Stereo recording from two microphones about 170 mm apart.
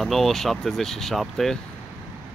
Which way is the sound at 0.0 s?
Centre (ahead or behind).